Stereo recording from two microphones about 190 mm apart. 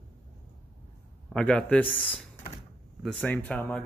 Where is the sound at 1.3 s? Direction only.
5° left (ahead or behind).